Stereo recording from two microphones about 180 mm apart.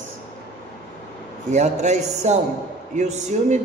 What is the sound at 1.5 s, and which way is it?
A man's voice, 40° right (ahead or behind).